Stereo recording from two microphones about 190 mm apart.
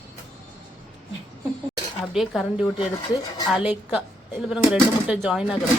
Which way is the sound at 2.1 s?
Centre (ahead or behind).